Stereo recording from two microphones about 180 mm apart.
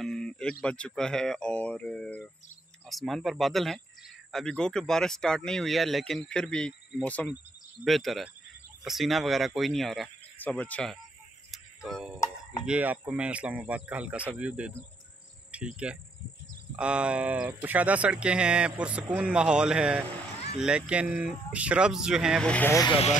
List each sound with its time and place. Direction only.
0.0 s speech: centre (ahead or behind)
11.5 s music: centre (ahead or behind)
12.6 s speech: 5° right (ahead or behind)
15.5 s cricket: 5° right (ahead or behind)
16.7 s speech: 5° right (ahead or behind); by 22.8 s 10° left (ahead or behind)
22.8 s speech: 30° left (ahead or behind)